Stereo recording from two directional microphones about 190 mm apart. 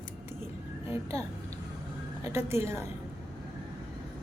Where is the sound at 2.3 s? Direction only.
15° right (ahead or behind).